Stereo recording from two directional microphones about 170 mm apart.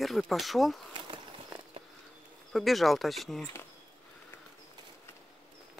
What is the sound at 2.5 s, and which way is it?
Speech, centre (ahead or behind).